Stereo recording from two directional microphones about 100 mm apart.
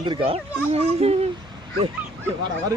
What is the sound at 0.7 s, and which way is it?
Speech, 90° right.